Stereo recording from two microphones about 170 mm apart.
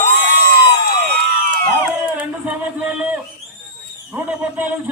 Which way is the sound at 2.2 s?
10° right (ahead or behind).